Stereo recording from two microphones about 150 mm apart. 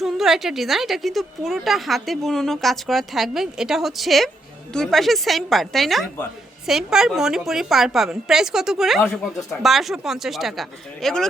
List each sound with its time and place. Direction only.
0.0 s a woman's voice: centre (ahead or behind)
9.0 s speech: 15° left (ahead or behind)
9.6 s a woman's voice: centre (ahead or behind)